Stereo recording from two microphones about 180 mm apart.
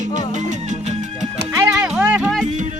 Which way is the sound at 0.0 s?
45° right (ahead or behind).